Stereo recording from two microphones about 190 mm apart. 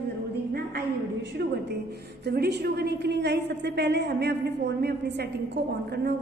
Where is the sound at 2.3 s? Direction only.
60° right (ahead or behind).